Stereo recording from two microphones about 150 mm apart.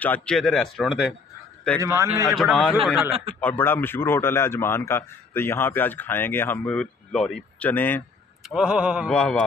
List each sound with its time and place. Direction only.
0.0 s speech: 10° left (ahead or behind)
1.8 s a man's voice: 20° right (ahead or behind)
2.2 s speech: centre (ahead or behind)
3.3 s a man's voice: 10° left (ahead or behind)
8.5 s speech: 5° right (ahead or behind)
9.1 s speech: 5° left (ahead or behind)